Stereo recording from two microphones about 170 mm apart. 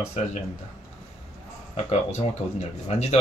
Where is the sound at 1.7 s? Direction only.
40° left (ahead or behind).